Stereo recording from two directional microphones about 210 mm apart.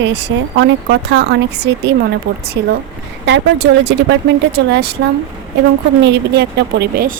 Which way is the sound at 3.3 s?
60° right (ahead or behind).